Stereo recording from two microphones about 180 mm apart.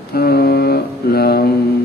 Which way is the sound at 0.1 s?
60° left (ahead or behind).